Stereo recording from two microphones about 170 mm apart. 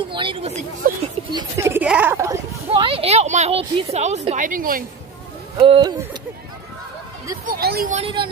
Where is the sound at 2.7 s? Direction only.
30° right (ahead or behind); by 4.8 s 55° right (ahead or behind).